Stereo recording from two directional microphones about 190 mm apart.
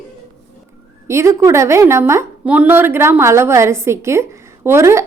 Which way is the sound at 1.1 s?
15° right (ahead or behind).